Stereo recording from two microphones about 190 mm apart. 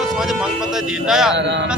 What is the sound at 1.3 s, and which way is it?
Speech, 70° right (ahead or behind).